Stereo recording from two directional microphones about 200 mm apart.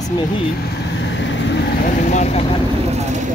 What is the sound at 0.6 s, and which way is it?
Vehicle, 60° left (ahead or behind).